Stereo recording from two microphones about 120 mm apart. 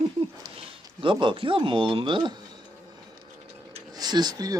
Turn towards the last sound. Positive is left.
turn(degrees=-30)  # may be behind; listen again after turning